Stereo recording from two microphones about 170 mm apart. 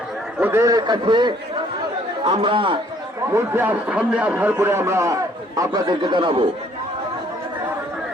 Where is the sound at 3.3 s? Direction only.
10° right (ahead or behind); by 6.4 s 30° right (ahead or behind).